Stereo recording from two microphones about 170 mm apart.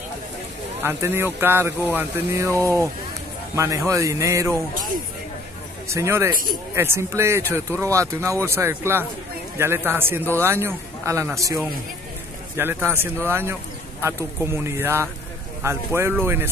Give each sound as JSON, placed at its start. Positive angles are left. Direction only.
{"t": 0.8, "sound": "speech", "side_deg": -15}
{"t": 5.9, "sound": "speech", "side_deg": -15}